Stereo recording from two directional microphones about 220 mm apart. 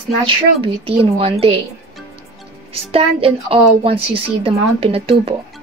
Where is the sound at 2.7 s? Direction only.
25° right (ahead or behind).